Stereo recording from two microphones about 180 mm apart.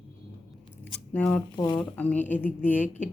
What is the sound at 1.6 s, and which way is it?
Speech, 20° left (ahead or behind).